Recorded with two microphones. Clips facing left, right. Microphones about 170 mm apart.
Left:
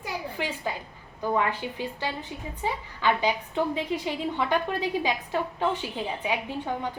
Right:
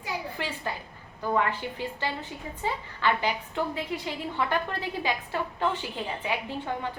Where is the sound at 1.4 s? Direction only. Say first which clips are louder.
Right 1 dB; 15° left (ahead or behind).